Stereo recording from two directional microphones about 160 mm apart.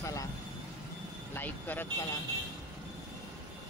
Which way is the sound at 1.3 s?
10° left (ahead or behind).